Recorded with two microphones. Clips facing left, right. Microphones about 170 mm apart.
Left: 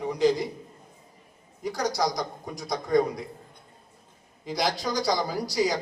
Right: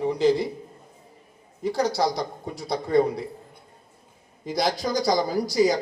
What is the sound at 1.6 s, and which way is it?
Speech, 30° right (ahead or behind).